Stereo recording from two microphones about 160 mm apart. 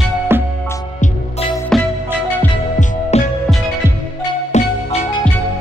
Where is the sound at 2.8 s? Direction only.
45° left (ahead or behind).